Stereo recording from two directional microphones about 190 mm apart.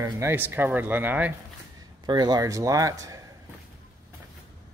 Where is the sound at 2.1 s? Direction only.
20° right (ahead or behind).